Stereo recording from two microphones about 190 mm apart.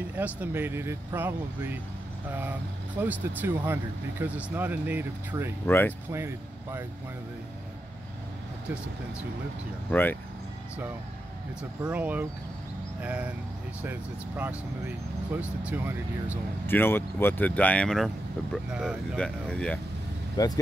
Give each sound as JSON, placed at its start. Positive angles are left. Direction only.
{"t": 0.2, "sound": "speech", "side_deg": -10}
{"t": 5.7, "sound": "speech", "side_deg": 10}
{"t": 6.1, "sound": "speech", "side_deg": -15}
{"t": 9.8, "sound": "speech", "side_deg": 10}
{"t": 11.9, "sound": "speech", "side_deg": -10}
{"t": 16.6, "sound": "speech", "side_deg": 10}
{"t": 20.4, "sound": "speech", "side_deg": 20}